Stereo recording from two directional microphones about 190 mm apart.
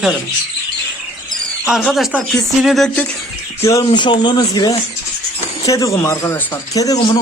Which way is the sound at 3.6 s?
15° left (ahead or behind).